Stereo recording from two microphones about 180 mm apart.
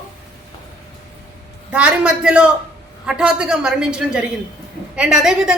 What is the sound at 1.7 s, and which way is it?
A woman's voice, 5° right (ahead or behind).